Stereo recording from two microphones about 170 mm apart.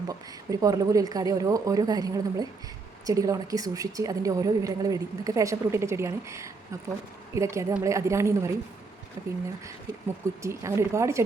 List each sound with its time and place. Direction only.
0.1 s a woman's voice: 20° right (ahead or behind)
10.4 s a woman's voice: 15° right (ahead or behind)